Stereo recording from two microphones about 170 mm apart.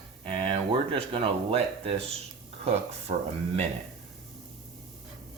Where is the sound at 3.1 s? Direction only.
40° right (ahead or behind).